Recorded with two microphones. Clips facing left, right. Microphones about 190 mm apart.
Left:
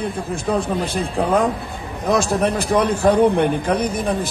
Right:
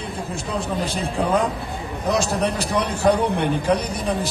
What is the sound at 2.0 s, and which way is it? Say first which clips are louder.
Speech: left 3 dB; 55° left (ahead or behind).